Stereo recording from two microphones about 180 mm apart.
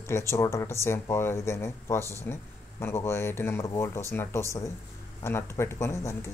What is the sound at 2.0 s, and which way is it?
Speech, 15° right (ahead or behind).